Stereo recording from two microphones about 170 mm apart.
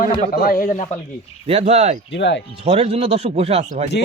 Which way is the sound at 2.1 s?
90° left.